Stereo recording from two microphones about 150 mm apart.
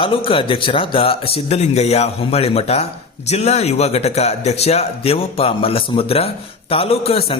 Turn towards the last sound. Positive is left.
turn(degrees=40)  # may be behind; listen again after turning